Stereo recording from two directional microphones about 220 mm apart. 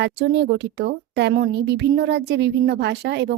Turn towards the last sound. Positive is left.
turn(degrees=-50)  # may be behind; listen again after turning